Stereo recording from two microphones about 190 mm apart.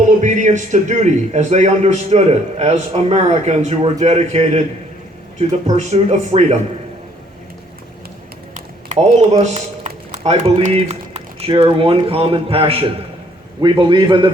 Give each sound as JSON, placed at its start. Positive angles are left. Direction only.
{"t": 0.2, "sound": "a man's voice", "side_deg": -40}
{"t": 8.5, "sound": "a man's voice", "side_deg": -35}